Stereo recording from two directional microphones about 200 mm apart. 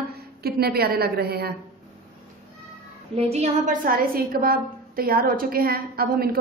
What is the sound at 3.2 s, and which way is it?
A woman's voice, 30° right (ahead or behind).